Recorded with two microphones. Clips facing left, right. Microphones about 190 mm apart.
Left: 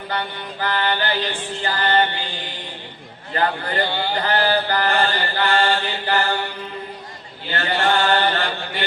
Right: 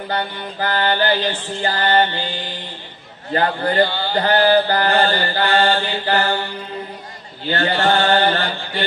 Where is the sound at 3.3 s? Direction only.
35° right (ahead or behind).